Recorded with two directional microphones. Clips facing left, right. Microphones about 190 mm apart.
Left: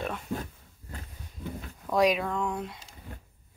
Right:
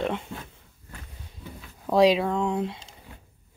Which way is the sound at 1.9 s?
30° right (ahead or behind).